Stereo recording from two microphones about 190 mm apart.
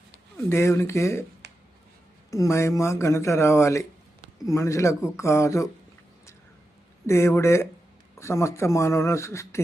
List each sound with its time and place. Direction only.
0.3 s speech: 15° left (ahead or behind)
1.4 s a sound: 60° right (ahead or behind)
2.3 s speech: 15° left (ahead or behind)
7.1 s speech: 15° left (ahead or behind)